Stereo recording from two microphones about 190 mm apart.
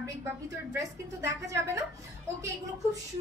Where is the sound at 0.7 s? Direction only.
15° right (ahead or behind).